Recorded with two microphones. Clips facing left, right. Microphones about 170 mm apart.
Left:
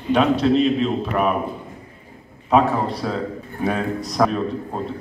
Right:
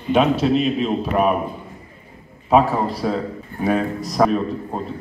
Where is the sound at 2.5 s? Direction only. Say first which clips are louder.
Right 1 dB; centre (ahead or behind).